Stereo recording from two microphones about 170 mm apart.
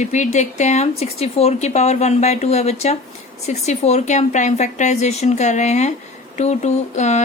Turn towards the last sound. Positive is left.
turn(degrees=40)  # may be behind; listen again after turning